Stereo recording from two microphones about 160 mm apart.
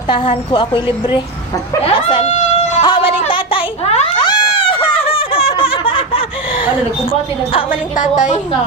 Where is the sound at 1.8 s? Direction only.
35° left (ahead or behind).